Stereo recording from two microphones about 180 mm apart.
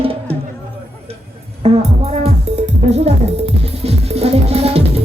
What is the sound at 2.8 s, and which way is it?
Music, 35° right (ahead or behind).